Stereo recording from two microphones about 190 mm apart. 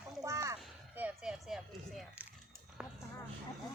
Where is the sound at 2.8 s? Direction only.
5° right (ahead or behind).